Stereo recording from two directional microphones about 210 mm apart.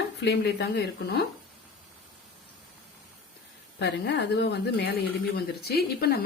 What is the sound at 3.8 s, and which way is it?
A woman's voice, 55° left (ahead or behind).